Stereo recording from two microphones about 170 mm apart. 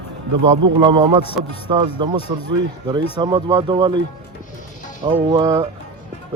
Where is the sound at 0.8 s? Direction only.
25° right (ahead or behind).